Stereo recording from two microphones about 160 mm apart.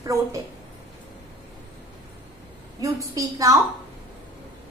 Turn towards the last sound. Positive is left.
turn(degrees=-20)  # may be behind; listen again after turning